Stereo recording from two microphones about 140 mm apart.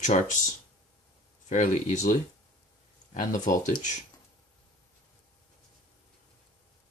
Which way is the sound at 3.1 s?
70° left (ahead or behind).